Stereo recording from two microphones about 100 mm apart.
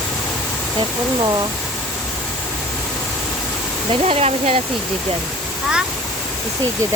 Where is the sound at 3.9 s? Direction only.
80° right.